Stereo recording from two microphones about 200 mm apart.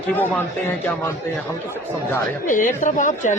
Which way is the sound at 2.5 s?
40° left (ahead or behind).